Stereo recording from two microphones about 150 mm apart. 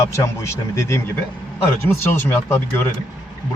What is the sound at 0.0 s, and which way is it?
A man's voice, 20° left (ahead or behind).